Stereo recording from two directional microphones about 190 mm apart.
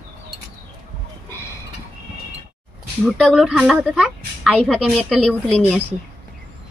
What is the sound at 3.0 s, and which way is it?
A woman's voice, centre (ahead or behind).